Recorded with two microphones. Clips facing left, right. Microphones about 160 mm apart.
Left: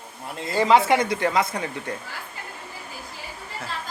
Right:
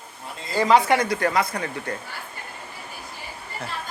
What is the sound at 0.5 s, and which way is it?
Speech, 20° left (ahead or behind).